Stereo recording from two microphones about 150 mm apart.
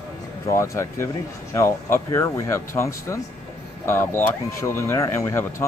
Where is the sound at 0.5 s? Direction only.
20° left (ahead or behind).